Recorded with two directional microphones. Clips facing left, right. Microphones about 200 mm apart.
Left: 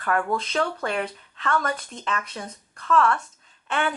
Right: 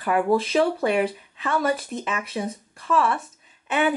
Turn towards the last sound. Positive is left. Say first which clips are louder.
# right 4 dB
turn(degrees=-5)  # may be behind; listen again after turning